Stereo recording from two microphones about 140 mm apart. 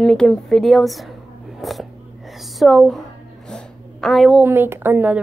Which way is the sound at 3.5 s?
Centre (ahead or behind).